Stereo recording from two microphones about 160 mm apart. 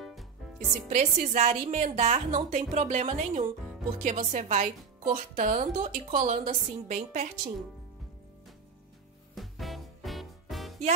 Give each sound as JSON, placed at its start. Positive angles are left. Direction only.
{"t": 0.0, "sound": "music", "side_deg": 0}
{"t": 0.8, "sound": "a woman's voice", "side_deg": -50}
{"t": 9.3, "sound": "music", "side_deg": 0}